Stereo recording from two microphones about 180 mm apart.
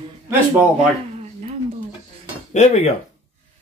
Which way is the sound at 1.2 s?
40° right (ahead or behind).